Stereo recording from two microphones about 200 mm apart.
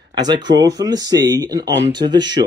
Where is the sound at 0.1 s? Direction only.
20° right (ahead or behind).